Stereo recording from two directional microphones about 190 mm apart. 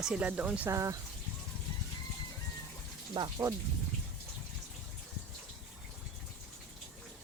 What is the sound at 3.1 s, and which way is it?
Speech, 20° right (ahead or behind).